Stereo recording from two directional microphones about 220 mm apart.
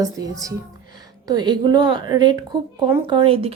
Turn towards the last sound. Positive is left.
turn(degrees=-25)  # may be behind; listen again after turning